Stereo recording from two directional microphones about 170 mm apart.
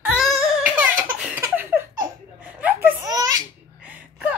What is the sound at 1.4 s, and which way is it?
Laughter, 15° right (ahead or behind).